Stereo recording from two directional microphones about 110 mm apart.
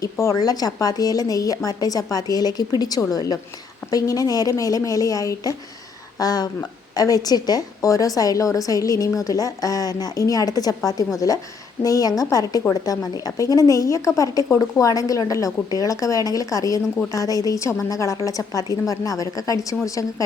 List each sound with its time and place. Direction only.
0.0 s a woman's voice: 30° left (ahead or behind)